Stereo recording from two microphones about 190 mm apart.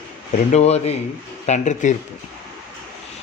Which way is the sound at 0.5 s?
35° left (ahead or behind).